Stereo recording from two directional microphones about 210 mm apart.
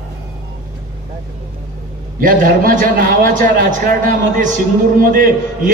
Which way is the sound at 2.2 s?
40° right (ahead or behind).